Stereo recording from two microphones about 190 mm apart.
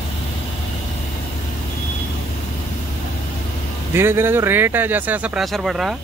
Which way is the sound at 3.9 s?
10° right (ahead or behind).